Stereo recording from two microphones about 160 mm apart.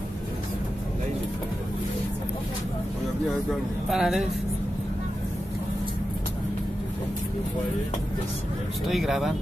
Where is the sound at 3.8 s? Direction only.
Centre (ahead or behind).